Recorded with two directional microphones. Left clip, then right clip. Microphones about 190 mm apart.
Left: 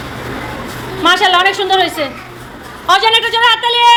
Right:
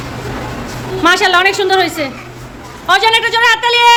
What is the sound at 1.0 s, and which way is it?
A woman's voice, 25° right (ahead or behind).